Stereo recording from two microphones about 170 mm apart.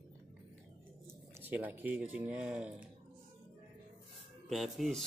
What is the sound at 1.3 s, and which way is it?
Speech, 10° right (ahead or behind).